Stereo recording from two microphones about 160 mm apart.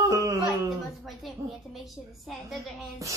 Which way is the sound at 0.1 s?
20° right (ahead or behind).